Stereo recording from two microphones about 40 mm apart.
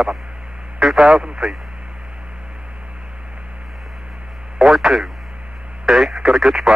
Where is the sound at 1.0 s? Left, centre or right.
Centre.